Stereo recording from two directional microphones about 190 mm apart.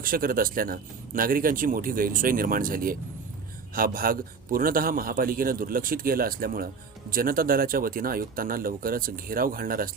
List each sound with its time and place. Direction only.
0.0 s speech: 50° right (ahead or behind)